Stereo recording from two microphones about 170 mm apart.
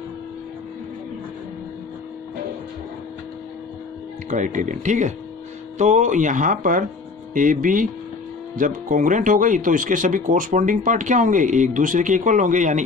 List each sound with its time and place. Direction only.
4.3 s speech: 50° right (ahead or behind)